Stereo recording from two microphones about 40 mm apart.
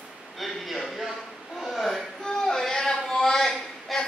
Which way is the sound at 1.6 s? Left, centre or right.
Centre.